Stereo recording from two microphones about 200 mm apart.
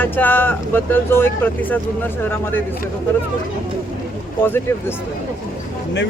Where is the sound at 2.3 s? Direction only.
10° left (ahead or behind).